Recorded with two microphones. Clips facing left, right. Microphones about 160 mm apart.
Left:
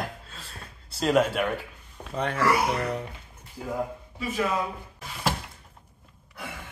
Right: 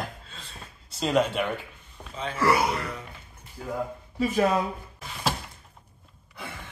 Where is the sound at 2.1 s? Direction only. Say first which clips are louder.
Left 5 dB; 65° left (ahead or behind).